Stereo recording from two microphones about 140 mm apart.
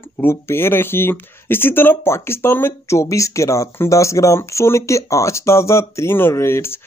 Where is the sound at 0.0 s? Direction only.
15° left (ahead or behind).